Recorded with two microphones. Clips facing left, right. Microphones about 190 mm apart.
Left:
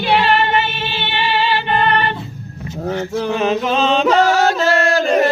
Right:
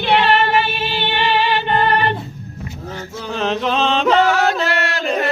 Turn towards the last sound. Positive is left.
turn(degrees=40)  # may be behind; listen again after turning